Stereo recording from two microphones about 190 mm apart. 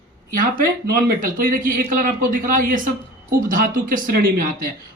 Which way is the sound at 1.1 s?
45° right (ahead or behind).